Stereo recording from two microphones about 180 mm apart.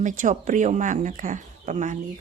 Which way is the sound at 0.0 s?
45° right (ahead or behind).